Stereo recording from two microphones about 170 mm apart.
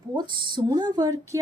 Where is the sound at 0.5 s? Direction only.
25° right (ahead or behind).